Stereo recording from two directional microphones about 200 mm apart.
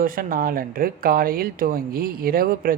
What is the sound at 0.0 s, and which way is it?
Speech, 45° right (ahead or behind).